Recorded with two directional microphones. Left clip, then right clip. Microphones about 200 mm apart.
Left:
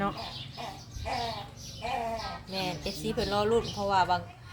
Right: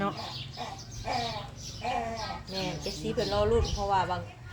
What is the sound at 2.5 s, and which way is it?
A woman's voice, 40° left (ahead or behind).